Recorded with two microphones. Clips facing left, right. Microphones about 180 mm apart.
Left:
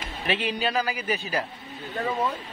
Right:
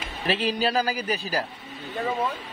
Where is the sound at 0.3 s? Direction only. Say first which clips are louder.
Right 2 dB; 35° right (ahead or behind).